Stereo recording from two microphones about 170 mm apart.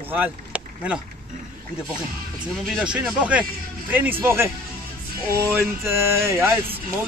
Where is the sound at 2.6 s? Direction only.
5° right (ahead or behind).